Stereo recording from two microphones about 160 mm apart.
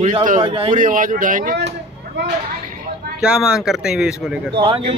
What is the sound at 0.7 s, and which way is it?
Speech, 55° right (ahead or behind).